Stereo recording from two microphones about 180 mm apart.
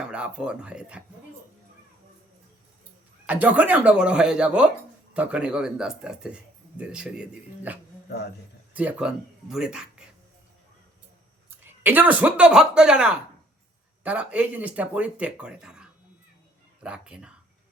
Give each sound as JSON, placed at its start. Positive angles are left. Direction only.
{"t": 0.0, "sound": "speech", "side_deg": -5}
{"t": 3.2, "sound": "speech", "side_deg": -10}
{"t": 11.6, "sound": "speech", "side_deg": -10}